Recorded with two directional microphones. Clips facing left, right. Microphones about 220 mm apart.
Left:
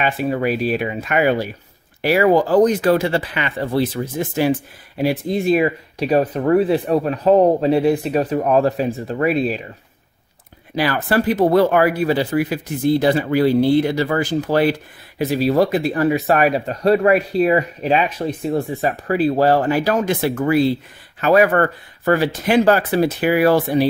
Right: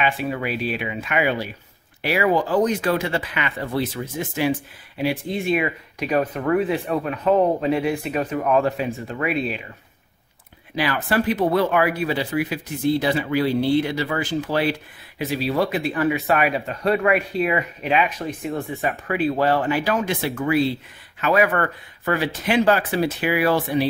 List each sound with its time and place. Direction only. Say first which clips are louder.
0.0 s speech: left 5 dB; 40° left (ahead or behind)
10.8 s speech: left 3 dB; 40° left (ahead or behind)